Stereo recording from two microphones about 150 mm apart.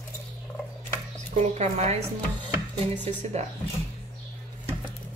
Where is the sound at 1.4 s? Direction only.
50° right (ahead or behind).